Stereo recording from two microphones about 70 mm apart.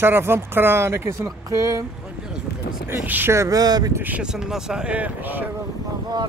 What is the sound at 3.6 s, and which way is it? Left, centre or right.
Speech, right.